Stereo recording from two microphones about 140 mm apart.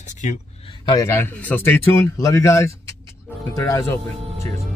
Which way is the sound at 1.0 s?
15° left (ahead or behind).